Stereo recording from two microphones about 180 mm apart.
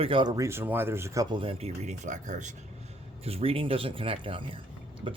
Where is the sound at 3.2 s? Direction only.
35° right (ahead or behind).